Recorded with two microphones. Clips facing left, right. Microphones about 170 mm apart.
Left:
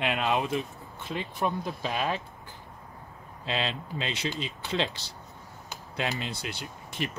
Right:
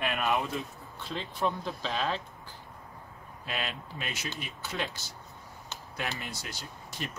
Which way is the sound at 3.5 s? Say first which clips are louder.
Left 5 dB; 25° left (ahead or behind).